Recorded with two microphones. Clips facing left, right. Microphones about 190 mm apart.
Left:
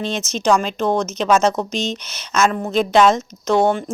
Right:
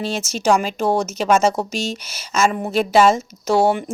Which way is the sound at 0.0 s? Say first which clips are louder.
Even; 5° right (ahead or behind).